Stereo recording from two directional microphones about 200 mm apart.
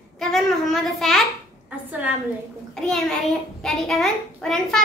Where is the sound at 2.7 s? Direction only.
5° left (ahead or behind).